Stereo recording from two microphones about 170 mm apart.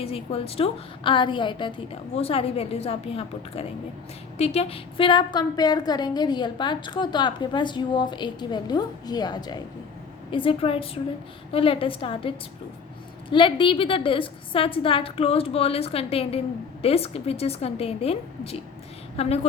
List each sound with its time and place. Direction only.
0.0 s a woman's voice: 35° left (ahead or behind)
13.3 s a woman's voice: 30° left (ahead or behind)